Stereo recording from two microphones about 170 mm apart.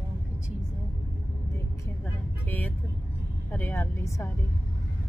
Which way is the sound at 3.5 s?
15° left (ahead or behind).